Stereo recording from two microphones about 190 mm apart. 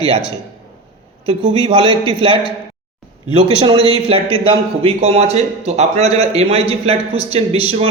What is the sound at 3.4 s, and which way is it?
A man's voice, 30° right (ahead or behind).